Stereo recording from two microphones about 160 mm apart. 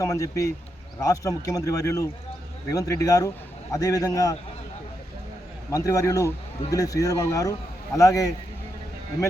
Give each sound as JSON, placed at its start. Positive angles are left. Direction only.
{"t": 0.0, "sound": "a man's voice", "side_deg": 20}
{"t": 5.7, "sound": "a man's voice", "side_deg": 20}